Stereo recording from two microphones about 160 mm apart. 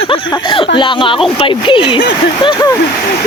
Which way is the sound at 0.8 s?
30° left (ahead or behind).